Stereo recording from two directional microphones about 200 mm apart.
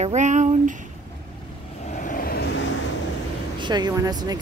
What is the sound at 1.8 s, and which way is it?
Vehicle, 40° left (ahead or behind).